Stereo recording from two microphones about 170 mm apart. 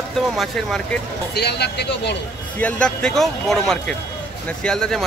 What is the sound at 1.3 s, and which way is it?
Speech, 75° left (ahead or behind).